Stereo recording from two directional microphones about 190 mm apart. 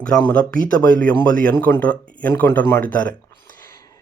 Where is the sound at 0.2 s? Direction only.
10° left (ahead or behind).